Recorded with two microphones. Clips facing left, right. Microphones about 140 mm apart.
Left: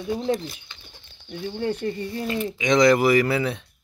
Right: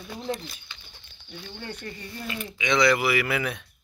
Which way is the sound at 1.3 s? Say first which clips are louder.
Left 12 dB; 45° left (ahead or behind).